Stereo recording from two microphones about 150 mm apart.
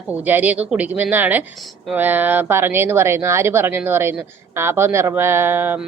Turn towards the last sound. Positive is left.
turn(degrees=-15)  # may be behind; listen again after turning